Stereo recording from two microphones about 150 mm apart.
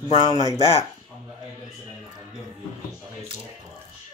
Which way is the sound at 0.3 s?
25° right (ahead or behind).